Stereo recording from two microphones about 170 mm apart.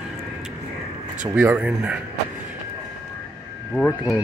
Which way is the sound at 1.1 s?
10° right (ahead or behind).